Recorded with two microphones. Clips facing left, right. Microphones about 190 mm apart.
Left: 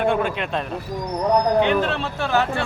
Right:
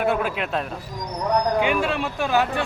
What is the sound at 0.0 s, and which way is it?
Speech, 5° right (ahead or behind).